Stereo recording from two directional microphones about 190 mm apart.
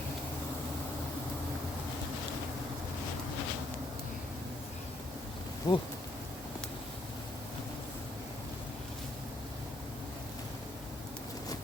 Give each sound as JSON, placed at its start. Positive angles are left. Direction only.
{"t": 5.7, "sound": "speech", "side_deg": 20}